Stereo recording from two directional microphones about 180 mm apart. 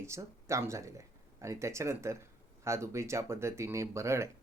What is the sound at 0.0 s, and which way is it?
Speech, 15° right (ahead or behind).